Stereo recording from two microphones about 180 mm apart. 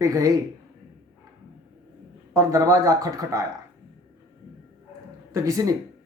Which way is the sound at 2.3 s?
15° right (ahead or behind).